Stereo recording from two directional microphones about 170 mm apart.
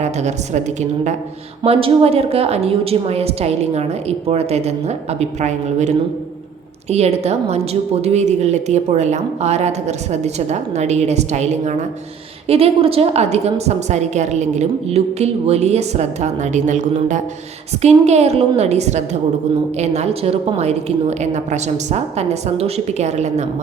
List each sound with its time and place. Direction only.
0.0 s a woman's voice: 40° right (ahead or behind)
6.9 s a woman's voice: 40° right (ahead or behind)